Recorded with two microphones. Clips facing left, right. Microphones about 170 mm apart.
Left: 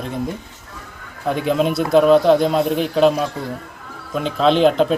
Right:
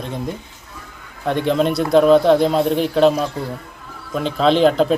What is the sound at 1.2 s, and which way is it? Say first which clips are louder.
A man's voice: right 1 dB; 5° left (ahead or behind).